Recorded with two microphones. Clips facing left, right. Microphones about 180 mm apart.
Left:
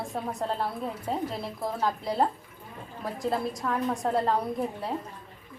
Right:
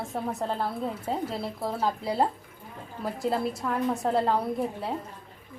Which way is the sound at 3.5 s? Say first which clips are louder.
Right 1 dB; 5° right (ahead or behind).